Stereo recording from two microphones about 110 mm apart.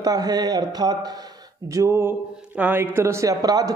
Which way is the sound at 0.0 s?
35° right (ahead or behind).